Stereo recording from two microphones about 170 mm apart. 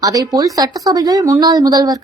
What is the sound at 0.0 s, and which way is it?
A woman's voice, 20° right (ahead or behind).